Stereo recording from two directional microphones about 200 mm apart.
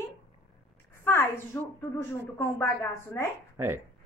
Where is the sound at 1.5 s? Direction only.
10° left (ahead or behind).